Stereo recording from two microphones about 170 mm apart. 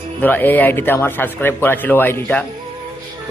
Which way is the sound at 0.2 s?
10° left (ahead or behind).